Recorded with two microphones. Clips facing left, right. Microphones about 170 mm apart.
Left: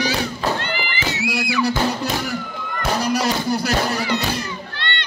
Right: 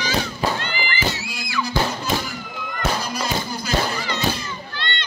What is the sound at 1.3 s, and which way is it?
Music, 70° left (ahead or behind).